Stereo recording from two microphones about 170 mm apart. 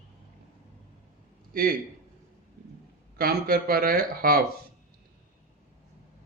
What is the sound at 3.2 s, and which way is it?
A man's voice, 60° right (ahead or behind).